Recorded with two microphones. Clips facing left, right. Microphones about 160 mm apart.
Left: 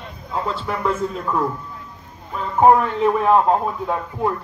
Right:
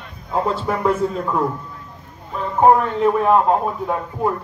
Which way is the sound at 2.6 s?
5° left (ahead or behind).